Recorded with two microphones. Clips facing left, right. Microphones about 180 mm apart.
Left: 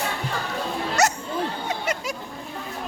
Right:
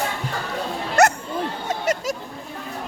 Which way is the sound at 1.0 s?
55° right (ahead or behind).